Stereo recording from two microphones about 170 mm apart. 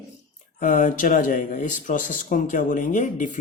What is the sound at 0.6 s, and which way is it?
Speech, 50° left (ahead or behind).